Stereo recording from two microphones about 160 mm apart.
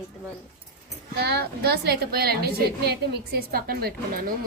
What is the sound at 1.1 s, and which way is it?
A woman's voice, 85° right.